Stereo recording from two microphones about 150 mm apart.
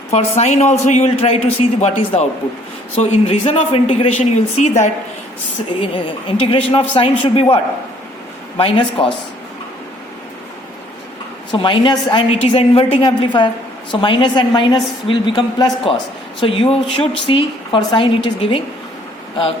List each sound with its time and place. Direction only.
0.1 s a man's voice: 45° left (ahead or behind)
5.8 s a woman's voice: 35° left (ahead or behind)
11.5 s a woman's voice: 35° left (ahead or behind)